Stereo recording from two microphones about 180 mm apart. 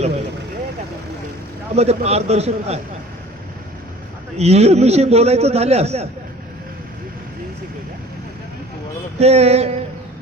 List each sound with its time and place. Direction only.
1.7 s a man's voice: 35° right (ahead or behind)
4.4 s a man's voice: 35° right (ahead or behind)
9.1 s a man's voice: 35° right (ahead or behind)